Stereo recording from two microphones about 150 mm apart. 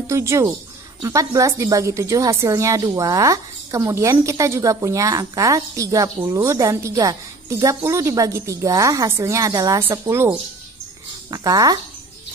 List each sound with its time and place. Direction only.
0.1 s a woman's voice: 20° right (ahead or behind)